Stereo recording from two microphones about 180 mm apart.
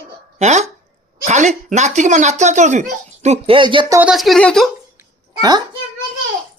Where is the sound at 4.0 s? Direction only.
5° right (ahead or behind).